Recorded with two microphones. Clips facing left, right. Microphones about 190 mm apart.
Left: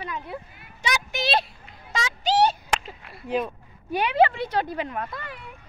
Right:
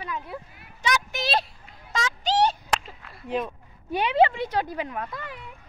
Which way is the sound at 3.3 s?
Centre (ahead or behind).